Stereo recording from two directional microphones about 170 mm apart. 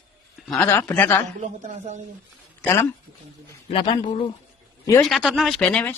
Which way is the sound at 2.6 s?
15° left (ahead or behind).